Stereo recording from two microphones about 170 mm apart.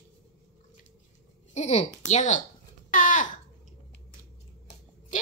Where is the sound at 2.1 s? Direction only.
45° left (ahead or behind).